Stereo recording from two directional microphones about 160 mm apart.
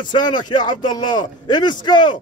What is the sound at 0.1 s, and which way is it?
A man's voice, 30° left (ahead or behind).